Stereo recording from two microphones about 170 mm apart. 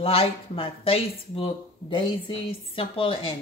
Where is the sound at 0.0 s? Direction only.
35° left (ahead or behind).